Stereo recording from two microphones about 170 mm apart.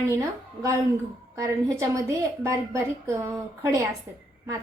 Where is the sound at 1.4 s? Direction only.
20° right (ahead or behind).